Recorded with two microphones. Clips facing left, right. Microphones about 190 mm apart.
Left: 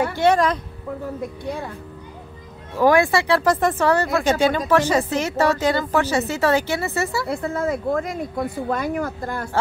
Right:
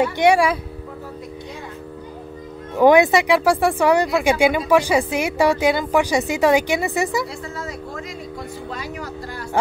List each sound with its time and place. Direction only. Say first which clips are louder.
0.1 s speech: right 2 dB; 15° right (ahead or behind)
2.8 s speech: right 3 dB; 20° right (ahead or behind)
7.2 s speech: left 8 dB; 55° left (ahead or behind)